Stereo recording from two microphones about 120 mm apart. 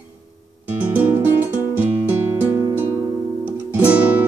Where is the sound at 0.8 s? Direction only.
15° right (ahead or behind).